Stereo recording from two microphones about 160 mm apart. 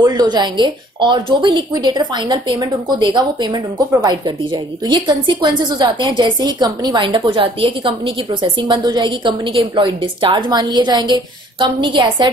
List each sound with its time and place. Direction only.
0.0 s a woman's voice: 25° right (ahead or behind)